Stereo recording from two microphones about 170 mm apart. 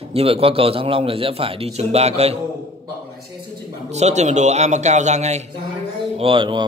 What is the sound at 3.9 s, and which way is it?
A man's voice, 40° right (ahead or behind).